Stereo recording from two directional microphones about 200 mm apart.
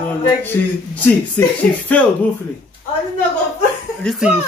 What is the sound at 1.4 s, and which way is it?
Speech, 10° left (ahead or behind).